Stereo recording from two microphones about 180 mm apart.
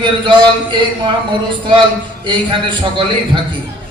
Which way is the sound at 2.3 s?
25° right (ahead or behind).